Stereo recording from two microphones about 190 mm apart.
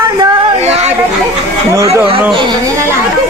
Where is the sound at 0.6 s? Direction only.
35° right (ahead or behind).